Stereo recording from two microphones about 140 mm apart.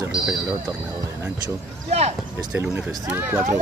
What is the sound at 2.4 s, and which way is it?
Speech, 25° right (ahead or behind).